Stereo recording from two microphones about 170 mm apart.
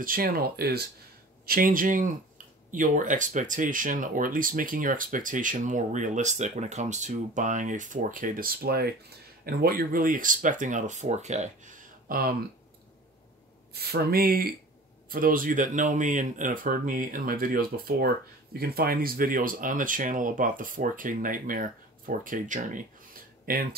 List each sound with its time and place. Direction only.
0.0 s speech: 55° right (ahead or behind)
13.7 s speech: 65° right (ahead or behind)